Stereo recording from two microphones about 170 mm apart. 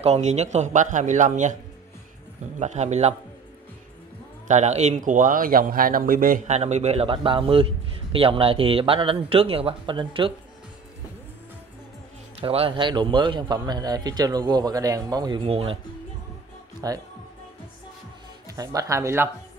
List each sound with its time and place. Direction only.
0.0 s a man's voice: 40° right (ahead or behind)
2.6 s speech: 40° right (ahead or behind)
4.5 s speech: 40° right (ahead or behind)
12.4 s a man's voice: 35° right (ahead or behind)
16.8 s a man's voice: 20° right (ahead or behind)
18.5 s speech: 20° right (ahead or behind)